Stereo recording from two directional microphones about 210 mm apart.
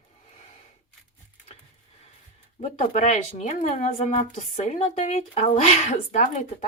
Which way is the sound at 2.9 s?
35° left (ahead or behind).